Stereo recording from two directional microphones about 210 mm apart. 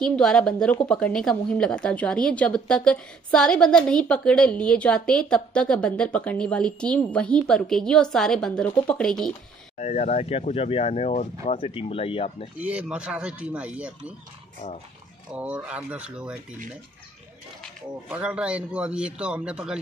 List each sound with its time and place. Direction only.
0.0 s a woman's voice: centre (ahead or behind)
9.8 s speech: 35° left (ahead or behind)
12.5 s speech: 5° right (ahead or behind)
15.3 s speech: 5° right (ahead or behind)
18.0 s a woman's voice: 5° right (ahead or behind)